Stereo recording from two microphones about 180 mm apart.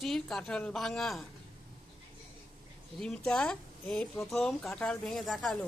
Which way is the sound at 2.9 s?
5° left (ahead or behind).